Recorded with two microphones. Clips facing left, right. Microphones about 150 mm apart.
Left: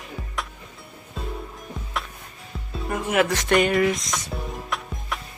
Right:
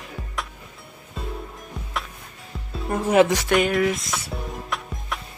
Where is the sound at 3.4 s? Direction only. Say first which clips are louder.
Left 1 dB; centre (ahead or behind).